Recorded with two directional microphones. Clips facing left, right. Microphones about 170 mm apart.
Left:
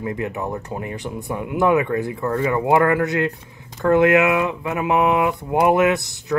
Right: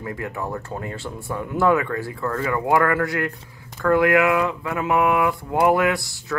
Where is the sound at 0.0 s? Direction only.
20° left (ahead or behind).